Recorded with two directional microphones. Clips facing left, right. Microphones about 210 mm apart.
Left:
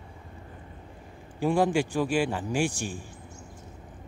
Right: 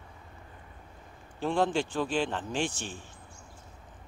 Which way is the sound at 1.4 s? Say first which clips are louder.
Left 4 dB; 10° left (ahead or behind).